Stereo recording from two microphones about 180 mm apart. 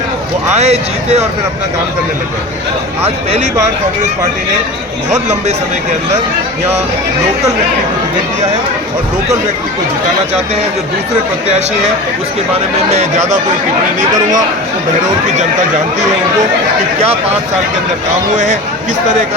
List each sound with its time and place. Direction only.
0.5 s speech: 35° right (ahead or behind)
3.0 s speech: 35° right (ahead or behind)
5.1 s speech: 40° right (ahead or behind)
12.9 s speech: 40° right (ahead or behind)
17.0 s speech: 35° right (ahead or behind)